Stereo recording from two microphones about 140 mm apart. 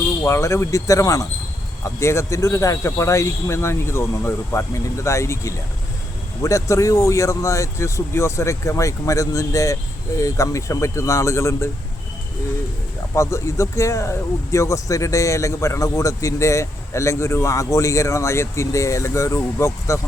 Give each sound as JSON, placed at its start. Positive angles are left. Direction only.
{"t": 0.2, "sound": "speech", "side_deg": 20}
{"t": 13.1, "sound": "speech", "side_deg": 20}